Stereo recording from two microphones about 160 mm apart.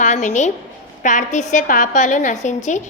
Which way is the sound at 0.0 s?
50° left (ahead or behind).